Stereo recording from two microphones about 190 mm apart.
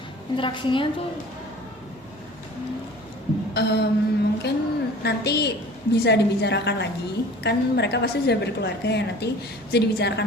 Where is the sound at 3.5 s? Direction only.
60° left (ahead or behind).